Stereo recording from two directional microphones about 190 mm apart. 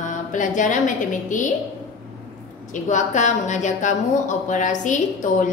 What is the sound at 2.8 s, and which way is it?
Speech, 40° left (ahead or behind).